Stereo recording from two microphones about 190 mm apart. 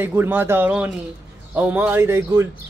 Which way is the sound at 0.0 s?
10° right (ahead or behind).